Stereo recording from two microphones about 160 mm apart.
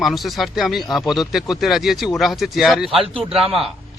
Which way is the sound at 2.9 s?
35° right (ahead or behind).